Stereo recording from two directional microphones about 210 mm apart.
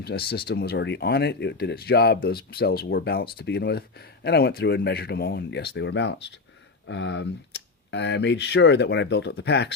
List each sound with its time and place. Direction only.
0.0 s speech: 50° left (ahead or behind)